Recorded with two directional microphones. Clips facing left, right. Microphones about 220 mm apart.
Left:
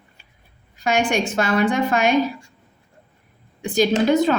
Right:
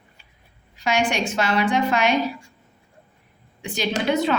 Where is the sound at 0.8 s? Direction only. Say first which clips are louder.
Left 2 dB; 50° left (ahead or behind).